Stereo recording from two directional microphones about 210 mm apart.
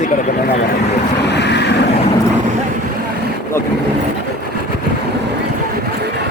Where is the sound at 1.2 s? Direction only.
55° left (ahead or behind).